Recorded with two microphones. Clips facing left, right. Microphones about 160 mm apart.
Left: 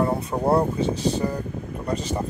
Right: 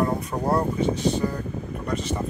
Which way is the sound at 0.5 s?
30° left (ahead or behind).